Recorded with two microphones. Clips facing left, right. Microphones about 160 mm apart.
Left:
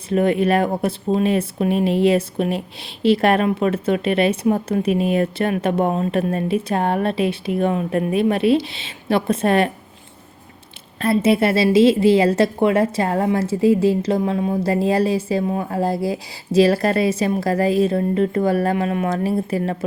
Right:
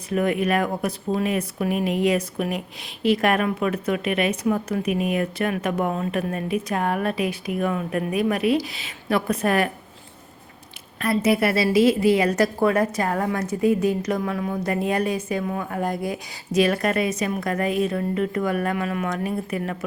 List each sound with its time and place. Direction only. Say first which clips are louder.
0.1 s speech: left 5 dB; 30° left (ahead or behind)
11.0 s speech: left 4 dB; 25° left (ahead or behind)